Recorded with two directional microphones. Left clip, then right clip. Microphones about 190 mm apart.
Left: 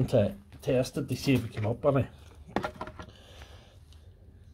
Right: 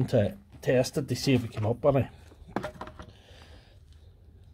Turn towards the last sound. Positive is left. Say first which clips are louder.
# left 2 dB
turn(degrees=0)  # may be behind; listen again after turning